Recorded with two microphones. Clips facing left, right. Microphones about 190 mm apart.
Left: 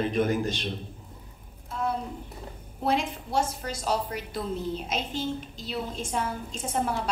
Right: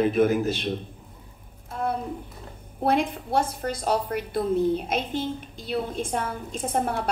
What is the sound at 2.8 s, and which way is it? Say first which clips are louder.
A woman's voice: right 4 dB; 55° right (ahead or behind).